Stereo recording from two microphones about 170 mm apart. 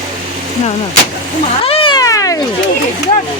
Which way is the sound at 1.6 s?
30° left (ahead or behind).